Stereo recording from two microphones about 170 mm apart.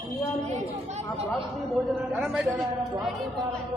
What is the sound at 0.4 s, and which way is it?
Chatter, 40° right (ahead or behind).